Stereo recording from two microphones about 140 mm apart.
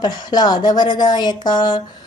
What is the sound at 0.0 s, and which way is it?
Speech, 30° left (ahead or behind).